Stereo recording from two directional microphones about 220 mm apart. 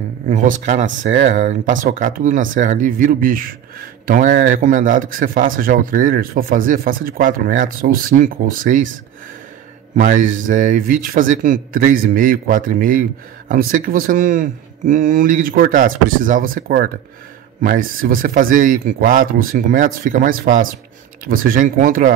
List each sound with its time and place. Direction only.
0.3 s a man's voice: 35° right (ahead or behind)
9.9 s a man's voice: 35° right (ahead or behind)